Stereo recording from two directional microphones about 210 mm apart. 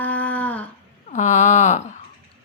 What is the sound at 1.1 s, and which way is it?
Speech, 35° left (ahead or behind).